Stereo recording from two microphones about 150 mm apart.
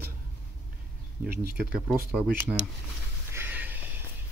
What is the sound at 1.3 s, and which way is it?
Speech, 90° right.